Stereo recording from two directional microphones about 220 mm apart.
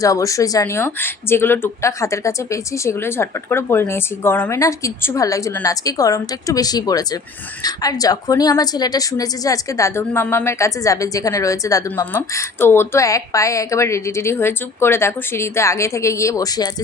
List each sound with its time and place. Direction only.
0.0 s a woman's voice: 15° left (ahead or behind)